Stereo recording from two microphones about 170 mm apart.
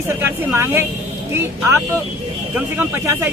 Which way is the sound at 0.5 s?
15° right (ahead or behind).